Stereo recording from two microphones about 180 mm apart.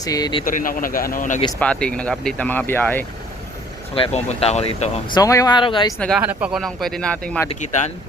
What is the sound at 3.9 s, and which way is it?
Speech, 35° left (ahead or behind).